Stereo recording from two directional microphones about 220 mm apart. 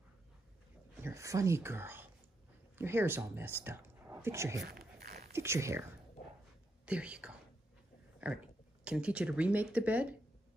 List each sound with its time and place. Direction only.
1.0 s speech: 15° right (ahead or behind)
4.6 s a sound: 45° right (ahead or behind)
5.3 s speech: 10° right (ahead or behind)
6.9 s speech: 5° right (ahead or behind)